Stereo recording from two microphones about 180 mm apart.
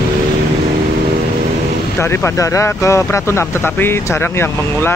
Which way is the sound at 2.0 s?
15° left (ahead or behind).